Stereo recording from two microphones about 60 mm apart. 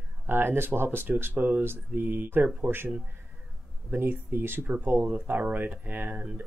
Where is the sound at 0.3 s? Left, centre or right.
Right.